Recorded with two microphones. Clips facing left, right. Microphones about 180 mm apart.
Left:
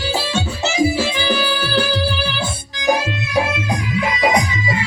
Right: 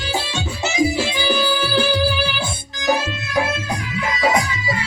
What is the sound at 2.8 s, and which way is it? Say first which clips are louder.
Music: left 2 dB; 15° left (ahead or behind).